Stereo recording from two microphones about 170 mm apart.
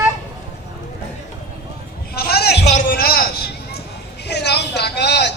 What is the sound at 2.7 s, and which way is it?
A man's voice, 50° left (ahead or behind).